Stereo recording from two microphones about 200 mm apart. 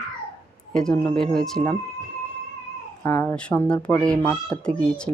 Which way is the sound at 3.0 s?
10° left (ahead or behind).